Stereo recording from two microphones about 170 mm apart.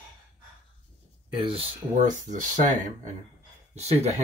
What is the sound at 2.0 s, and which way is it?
Speech, 50° right (ahead or behind).